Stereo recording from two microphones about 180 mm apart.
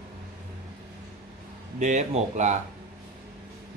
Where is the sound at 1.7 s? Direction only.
40° right (ahead or behind).